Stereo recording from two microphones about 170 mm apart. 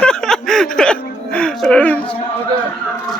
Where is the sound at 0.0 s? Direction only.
5° left (ahead or behind).